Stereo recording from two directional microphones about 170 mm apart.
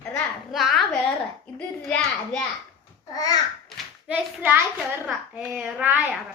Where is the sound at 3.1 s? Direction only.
20° left (ahead or behind).